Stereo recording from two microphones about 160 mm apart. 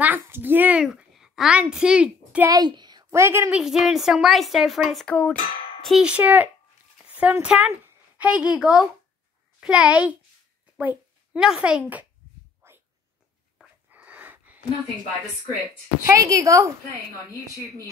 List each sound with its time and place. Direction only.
0.0 s a child's voice: 10° right (ahead or behind)
2.5 s a woman's voice: 25° right (ahead or behind); by 12.1 s 10° right (ahead or behind)
12.6 s a sound: 15° right (ahead or behind)
16.0 s a woman's voice: 20° right (ahead or behind)